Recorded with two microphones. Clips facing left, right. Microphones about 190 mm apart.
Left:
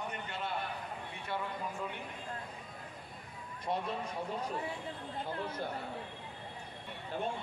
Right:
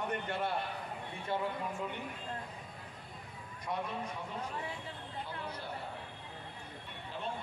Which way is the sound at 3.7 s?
30° left (ahead or behind).